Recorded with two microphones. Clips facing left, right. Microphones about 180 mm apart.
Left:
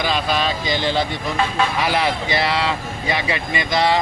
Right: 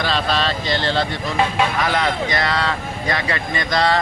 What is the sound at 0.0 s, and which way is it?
Speech, 10° left (ahead or behind).